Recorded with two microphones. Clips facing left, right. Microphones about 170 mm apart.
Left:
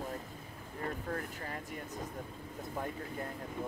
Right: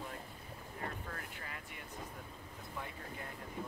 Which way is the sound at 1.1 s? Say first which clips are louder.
Left 8 dB; 40° left (ahead or behind).